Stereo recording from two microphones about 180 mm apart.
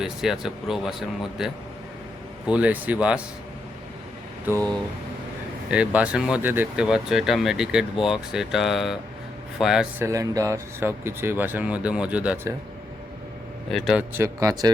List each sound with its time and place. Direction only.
0.0 s speech: 5° right (ahead or behind)
2.5 s speech: 10° right (ahead or behind)
4.5 s speech: 10° right (ahead or behind)
5.7 s speech: 5° right (ahead or behind)
10.0 s speech: 15° right (ahead or behind)
13.7 s speech: centre (ahead or behind)
14.2 s speech: 20° right (ahead or behind)